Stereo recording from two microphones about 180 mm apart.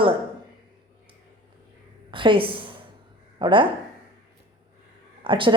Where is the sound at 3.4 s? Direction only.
30° right (ahead or behind).